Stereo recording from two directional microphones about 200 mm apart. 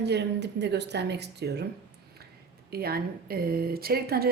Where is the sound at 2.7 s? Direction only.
50° right (ahead or behind).